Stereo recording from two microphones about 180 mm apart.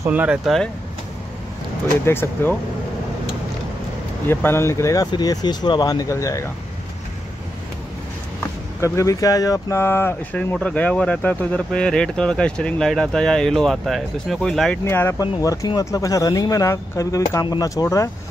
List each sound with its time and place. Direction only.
0.0 s speech: 10° right (ahead or behind)
2.0 s speech: 15° left (ahead or behind)
4.3 s speech: 15° left (ahead or behind)
8.8 s speech: 15° left (ahead or behind)
14.9 s speech: 15° left (ahead or behind)